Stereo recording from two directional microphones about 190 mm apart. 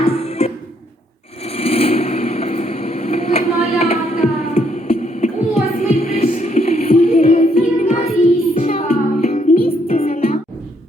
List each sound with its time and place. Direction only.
0.0 s music: 35° left (ahead or behind)
1.5 s vehicle: 30° left (ahead or behind)
5.8 s music: 35° left (ahead or behind)
9.6 s music: 50° left (ahead or behind)
9.9 s music: 30° left (ahead or behind)